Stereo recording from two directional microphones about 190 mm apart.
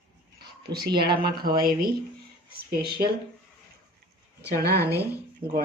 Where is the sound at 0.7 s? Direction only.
55° right (ahead or behind).